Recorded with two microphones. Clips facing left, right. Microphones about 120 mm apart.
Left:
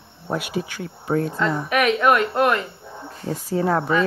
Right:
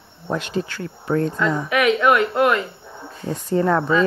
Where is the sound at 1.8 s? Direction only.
20° left (ahead or behind).